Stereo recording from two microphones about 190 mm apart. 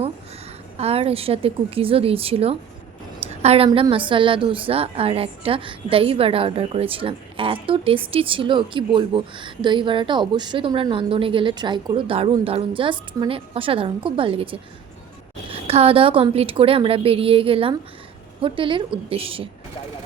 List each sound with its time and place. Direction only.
0.8 s a woman's voice: 30° right (ahead or behind)
3.2 s a sound: 35° right (ahead or behind)
3.7 s a woman's voice: 25° right (ahead or behind)